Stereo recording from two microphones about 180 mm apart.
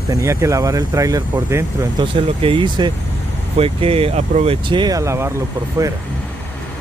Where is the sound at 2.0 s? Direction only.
25° right (ahead or behind).